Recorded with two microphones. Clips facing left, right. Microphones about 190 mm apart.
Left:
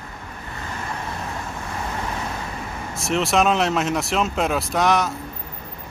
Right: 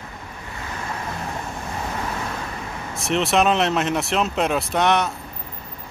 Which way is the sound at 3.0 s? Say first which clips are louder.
Even; centre (ahead or behind).